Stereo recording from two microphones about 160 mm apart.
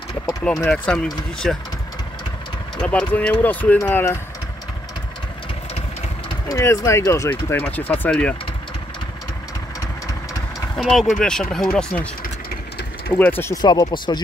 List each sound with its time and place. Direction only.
0.7 s speech: 5° left (ahead or behind)
2.8 s speech: 5° left (ahead or behind)
6.5 s speech: 20° left (ahead or behind)
10.8 s speech: centre (ahead or behind)
12.2 s vehicle: 70° left (ahead or behind)
13.1 s speech: 10° left (ahead or behind); by 14.2 s 25° left (ahead or behind)